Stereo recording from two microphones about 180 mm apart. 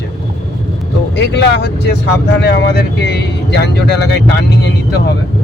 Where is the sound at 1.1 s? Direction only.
75° left (ahead or behind).